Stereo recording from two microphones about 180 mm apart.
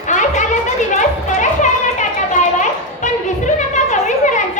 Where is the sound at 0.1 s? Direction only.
40° left (ahead or behind).